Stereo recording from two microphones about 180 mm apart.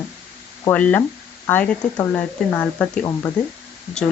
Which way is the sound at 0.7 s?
10° left (ahead or behind).